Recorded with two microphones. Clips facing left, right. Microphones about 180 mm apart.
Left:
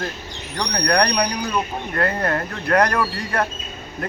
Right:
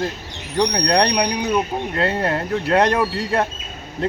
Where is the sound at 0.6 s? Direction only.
20° right (ahead or behind).